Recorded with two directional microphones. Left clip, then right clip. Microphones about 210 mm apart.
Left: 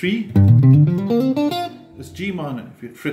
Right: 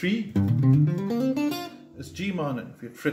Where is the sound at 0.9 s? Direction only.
40° left (ahead or behind).